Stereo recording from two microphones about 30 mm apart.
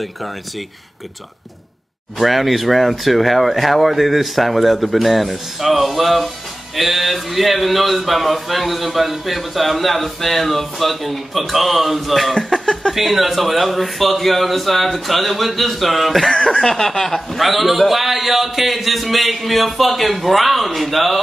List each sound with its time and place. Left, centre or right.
2.1 s speech: centre
12.4 s a sound: left
12.9 s speech: centre
16.6 s speech: centre
17.4 s speech: centre